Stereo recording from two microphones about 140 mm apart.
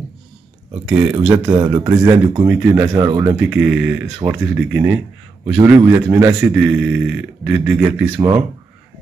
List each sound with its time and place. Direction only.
0.8 s a man's voice: 5° right (ahead or behind)
2.8 s speech: 30° right (ahead or behind)
3.3 s a man's voice: 10° right (ahead or behind)